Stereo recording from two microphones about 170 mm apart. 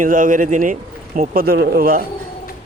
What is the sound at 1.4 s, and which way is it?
Speech, 65° right (ahead or behind).